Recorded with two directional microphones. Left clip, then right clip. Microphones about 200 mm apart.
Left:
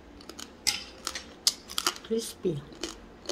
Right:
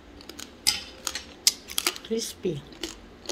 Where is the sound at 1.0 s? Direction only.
20° left (ahead or behind).